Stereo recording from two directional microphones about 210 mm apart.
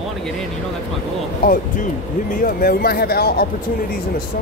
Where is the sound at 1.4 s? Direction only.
45° left (ahead or behind).